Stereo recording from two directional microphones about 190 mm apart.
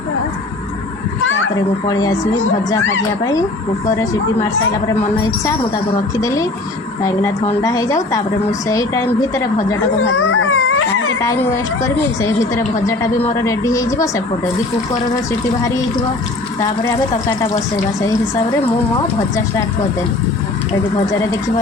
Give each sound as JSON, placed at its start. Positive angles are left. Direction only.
{"t": 1.2, "sound": "a sound", "side_deg": 90}
{"t": 1.9, "sound": "speech", "side_deg": 20}
{"t": 6.1, "sound": "a woman's voice", "side_deg": 15}
{"t": 7.6, "sound": "a woman's voice", "side_deg": 20}
{"t": 10.1, "sound": "a sound", "side_deg": 90}
{"t": 11.2, "sound": "a woman's voice", "side_deg": 15}
{"t": 16.6, "sound": "a woman's voice", "side_deg": 15}
{"t": 21.2, "sound": "a woman's voice", "side_deg": 15}